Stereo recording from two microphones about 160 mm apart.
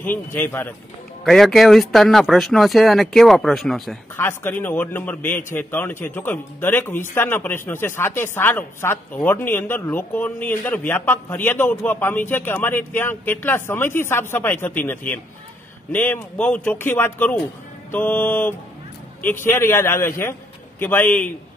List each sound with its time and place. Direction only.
0.0 s a man's voice: 10° left (ahead or behind)
1.2 s speech: centre (ahead or behind)
4.2 s a man's voice: 15° left (ahead or behind)